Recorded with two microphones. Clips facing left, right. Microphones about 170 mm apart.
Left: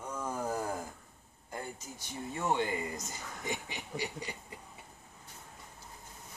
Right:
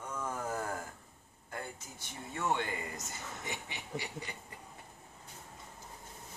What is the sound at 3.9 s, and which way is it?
Speech, centre (ahead or behind).